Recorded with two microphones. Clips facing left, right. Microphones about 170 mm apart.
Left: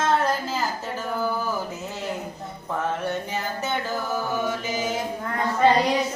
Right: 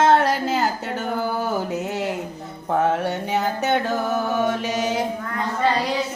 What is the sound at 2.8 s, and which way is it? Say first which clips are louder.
Music: right 5 dB; 70° right (ahead or behind).